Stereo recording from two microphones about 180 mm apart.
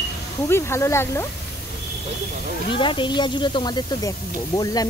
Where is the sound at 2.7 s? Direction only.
25° left (ahead or behind).